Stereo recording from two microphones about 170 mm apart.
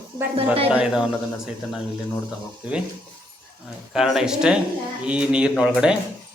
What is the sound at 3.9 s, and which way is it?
A man's voice, 5° right (ahead or behind).